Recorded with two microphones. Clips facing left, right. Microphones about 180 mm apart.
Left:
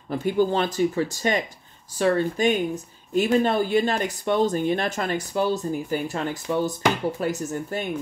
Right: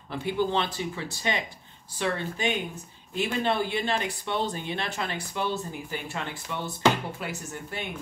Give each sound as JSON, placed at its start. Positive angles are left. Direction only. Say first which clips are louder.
{"t": 0.1, "sound": "speech", "louder": "left 5 dB", "side_deg": 45}